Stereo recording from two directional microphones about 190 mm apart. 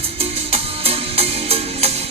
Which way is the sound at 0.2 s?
30° right (ahead or behind).